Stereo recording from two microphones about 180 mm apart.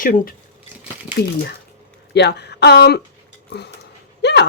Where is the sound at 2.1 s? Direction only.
70° left (ahead or behind).